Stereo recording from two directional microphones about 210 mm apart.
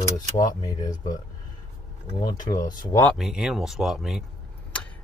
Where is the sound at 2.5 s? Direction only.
15° left (ahead or behind).